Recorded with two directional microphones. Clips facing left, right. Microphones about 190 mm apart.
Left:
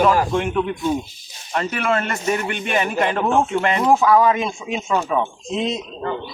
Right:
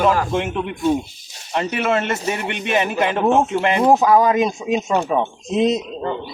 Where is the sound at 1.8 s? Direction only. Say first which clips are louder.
Left 1 dB; 20° right (ahead or behind).